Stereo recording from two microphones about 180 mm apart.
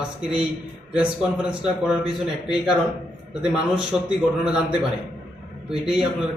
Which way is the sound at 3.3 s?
5° right (ahead or behind).